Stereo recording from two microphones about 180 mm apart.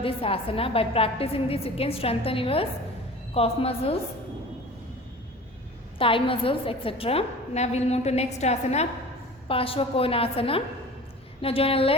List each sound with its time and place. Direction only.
0.0 s a woman's voice: 30° left (ahead or behind)
6.0 s a woman's voice: 30° left (ahead or behind)